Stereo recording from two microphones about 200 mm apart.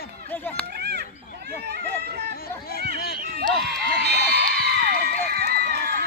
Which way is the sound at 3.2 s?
45° right (ahead or behind).